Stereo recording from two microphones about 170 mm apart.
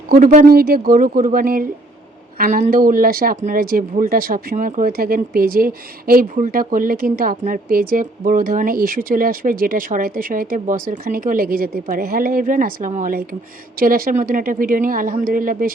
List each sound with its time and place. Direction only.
0.1 s speech: 50° right (ahead or behind)